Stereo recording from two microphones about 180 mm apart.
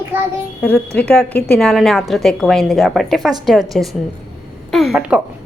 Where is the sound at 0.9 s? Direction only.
5° left (ahead or behind).